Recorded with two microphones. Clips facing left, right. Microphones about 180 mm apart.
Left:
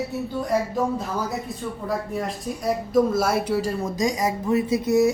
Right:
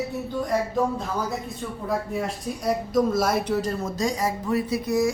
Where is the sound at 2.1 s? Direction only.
Centre (ahead or behind).